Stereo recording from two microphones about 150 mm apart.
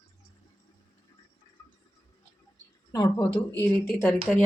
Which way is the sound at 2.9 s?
20° left (ahead or behind).